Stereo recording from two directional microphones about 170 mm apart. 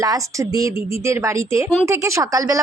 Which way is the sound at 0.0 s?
20° right (ahead or behind).